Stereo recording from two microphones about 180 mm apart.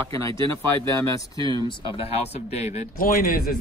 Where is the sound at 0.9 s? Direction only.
20° left (ahead or behind).